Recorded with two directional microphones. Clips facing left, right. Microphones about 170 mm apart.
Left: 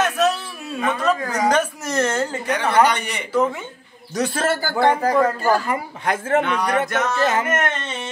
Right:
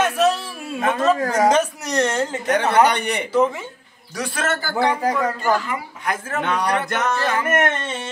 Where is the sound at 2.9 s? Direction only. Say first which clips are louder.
Right 3 dB; 60° right (ahead or behind).